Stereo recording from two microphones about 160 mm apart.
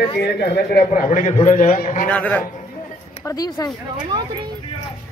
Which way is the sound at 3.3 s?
25° left (ahead or behind).